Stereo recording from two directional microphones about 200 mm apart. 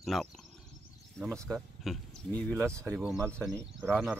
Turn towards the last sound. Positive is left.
turn(degrees=-5)  # may be behind; listen again after turning